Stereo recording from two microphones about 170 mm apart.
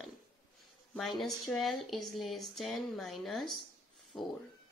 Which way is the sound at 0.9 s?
Centre (ahead or behind).